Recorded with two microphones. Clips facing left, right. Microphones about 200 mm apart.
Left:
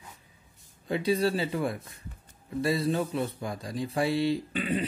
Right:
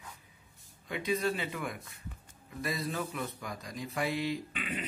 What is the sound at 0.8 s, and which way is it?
Speech, 30° left (ahead or behind).